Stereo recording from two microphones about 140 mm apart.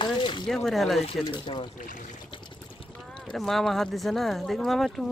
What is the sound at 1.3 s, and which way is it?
Speech, 35° left (ahead or behind).